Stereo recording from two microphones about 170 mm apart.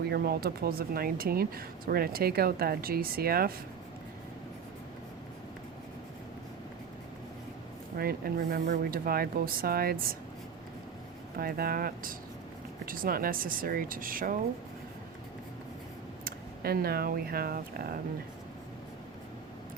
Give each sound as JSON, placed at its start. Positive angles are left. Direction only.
{"t": 0.1, "sound": "speech", "side_deg": -65}
{"t": 7.9, "sound": "speech", "side_deg": -60}
{"t": 11.3, "sound": "speech", "side_deg": -60}
{"t": 16.2, "sound": "speech", "side_deg": -60}